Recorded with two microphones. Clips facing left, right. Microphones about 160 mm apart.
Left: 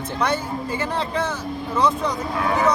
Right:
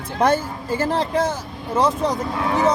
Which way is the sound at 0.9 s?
40° right (ahead or behind).